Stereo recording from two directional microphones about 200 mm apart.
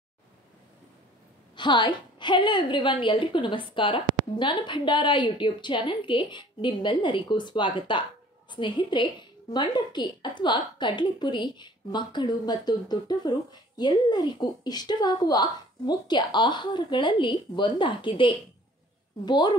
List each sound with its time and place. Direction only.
1.6 s a woman's voice: 25° left (ahead or behind)